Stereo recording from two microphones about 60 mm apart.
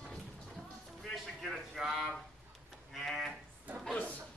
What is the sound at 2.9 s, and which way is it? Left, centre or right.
Livestock, centre.